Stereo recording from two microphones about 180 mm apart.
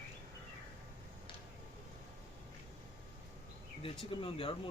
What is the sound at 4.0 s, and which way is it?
Speech, 30° left (ahead or behind).